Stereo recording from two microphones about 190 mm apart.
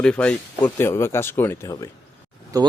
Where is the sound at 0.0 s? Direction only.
5° left (ahead or behind).